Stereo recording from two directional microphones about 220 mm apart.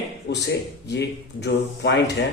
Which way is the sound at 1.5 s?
45° left (ahead or behind).